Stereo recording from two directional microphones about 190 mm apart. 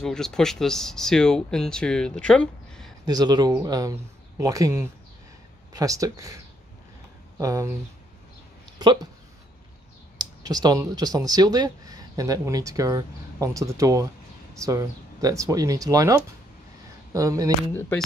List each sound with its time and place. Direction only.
0.0 s speech: 5° left (ahead or behind)
3.1 s speech: 20° right (ahead or behind)
8.7 s speech: 20° right (ahead or behind)
10.1 s speech: 20° right (ahead or behind)